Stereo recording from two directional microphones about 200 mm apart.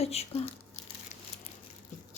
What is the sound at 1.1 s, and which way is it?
Crumpling, 35° left (ahead or behind).